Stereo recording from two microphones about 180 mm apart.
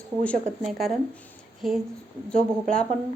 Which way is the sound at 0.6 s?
Centre (ahead or behind).